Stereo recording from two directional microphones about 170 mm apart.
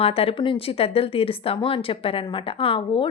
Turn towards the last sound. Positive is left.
turn(degrees=30)  # may be behind; listen again after turning